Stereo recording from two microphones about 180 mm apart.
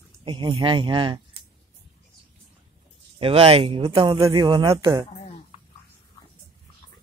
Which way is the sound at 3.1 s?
35° right (ahead or behind).